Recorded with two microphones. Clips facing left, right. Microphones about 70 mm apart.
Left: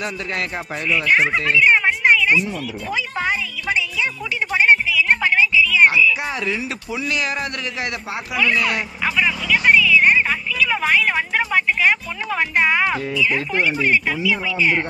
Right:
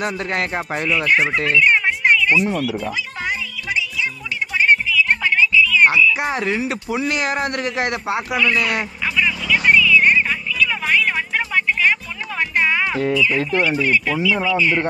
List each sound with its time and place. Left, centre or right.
0.0 s speech: right
0.8 s speech: centre
3.3 s music: left
4.6 s music: centre
6.4 s speech: right
8.4 s speech: centre
9.0 s vehicle: centre
13.1 s speech: centre